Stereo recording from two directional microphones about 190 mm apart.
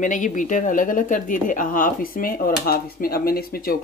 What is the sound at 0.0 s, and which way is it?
A woman's voice, 40° left (ahead or behind).